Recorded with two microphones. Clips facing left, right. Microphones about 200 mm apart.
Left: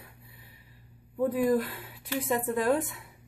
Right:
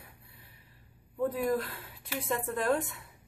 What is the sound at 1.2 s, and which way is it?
A woman's voice, centre (ahead or behind).